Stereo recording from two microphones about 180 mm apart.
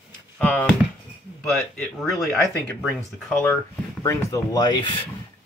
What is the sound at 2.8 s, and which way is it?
Speech, 5° left (ahead or behind).